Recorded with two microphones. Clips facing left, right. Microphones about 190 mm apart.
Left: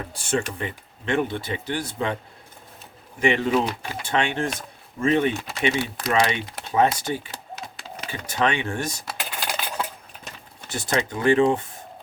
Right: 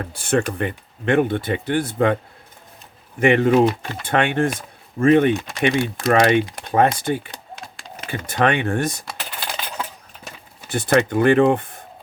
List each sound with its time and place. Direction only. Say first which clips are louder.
0.0 s speech: right 5 dB; 60° right (ahead or behind)
3.2 s speech: right 6 dB; 55° right (ahead or behind)
5.7 s speech: right 5 dB; 5° left (ahead or behind)
6.1 s speech: right 7 dB; 55° right (ahead or behind)
7.3 s typing: even; 5° left (ahead or behind)
8.3 s speech: right 5 dB; 55° right (ahead or behind)
9.1 s typing: even; 10° left (ahead or behind)
10.7 s speech: right 8 dB; 60° right (ahead or behind)